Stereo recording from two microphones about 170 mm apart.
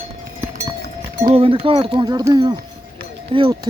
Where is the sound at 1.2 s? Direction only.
30° right (ahead or behind).